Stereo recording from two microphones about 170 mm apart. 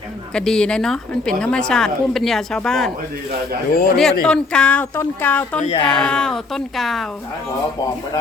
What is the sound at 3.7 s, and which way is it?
Speech, 60° left (ahead or behind).